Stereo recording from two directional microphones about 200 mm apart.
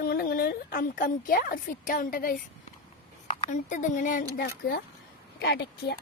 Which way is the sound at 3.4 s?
40° left (ahead or behind).